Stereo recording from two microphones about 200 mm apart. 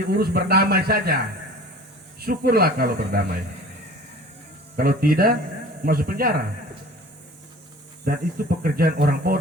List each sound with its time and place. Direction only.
0.1 s speech: 50° right (ahead or behind)
4.8 s speech: 45° right (ahead or behind)
8.0 s speech: 45° right (ahead or behind)